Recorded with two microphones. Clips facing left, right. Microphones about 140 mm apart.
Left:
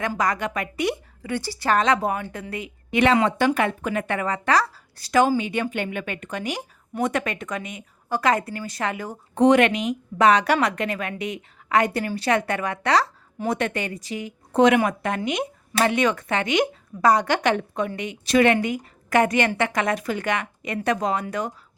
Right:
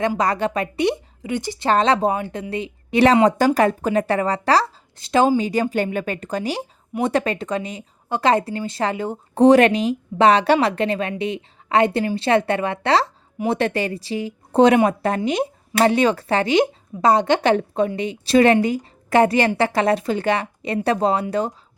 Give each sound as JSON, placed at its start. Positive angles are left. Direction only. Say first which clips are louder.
{"t": 0.2, "sound": "a woman's voice", "louder": "right 4 dB", "side_deg": -30}